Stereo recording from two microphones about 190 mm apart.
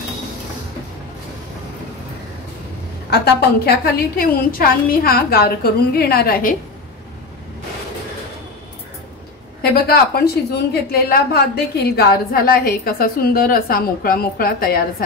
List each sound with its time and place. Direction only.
3.1 s a woman's voice: 60° left (ahead or behind)
9.6 s a woman's voice: 55° left (ahead or behind)